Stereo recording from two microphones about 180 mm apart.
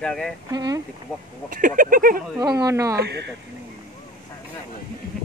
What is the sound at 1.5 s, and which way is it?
Speech, 45° right (ahead or behind).